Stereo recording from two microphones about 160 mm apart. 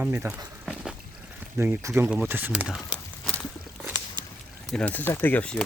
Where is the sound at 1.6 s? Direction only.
15° right (ahead or behind).